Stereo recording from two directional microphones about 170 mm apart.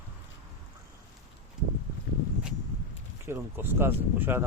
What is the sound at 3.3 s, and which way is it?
Speech, 15° right (ahead or behind).